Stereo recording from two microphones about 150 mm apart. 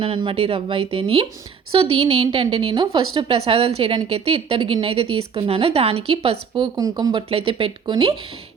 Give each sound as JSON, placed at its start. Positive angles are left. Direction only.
{"t": 0.0, "sound": "a woman's voice", "side_deg": -35}
{"t": 6.5, "sound": "a woman's voice", "side_deg": -25}